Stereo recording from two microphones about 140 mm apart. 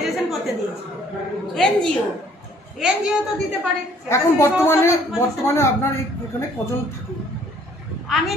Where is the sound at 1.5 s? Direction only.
5° left (ahead or behind).